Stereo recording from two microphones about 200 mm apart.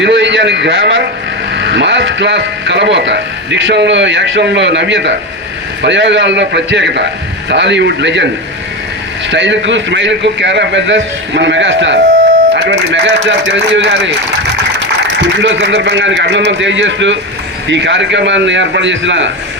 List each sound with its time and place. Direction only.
0.0 s a man's voice: 65° right (ahead or behind)
9.3 s speech: 65° right (ahead or behind)
15.2 s a man's voice: 60° right (ahead or behind)